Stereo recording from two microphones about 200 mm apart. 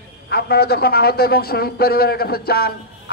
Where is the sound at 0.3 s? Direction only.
50° left (ahead or behind).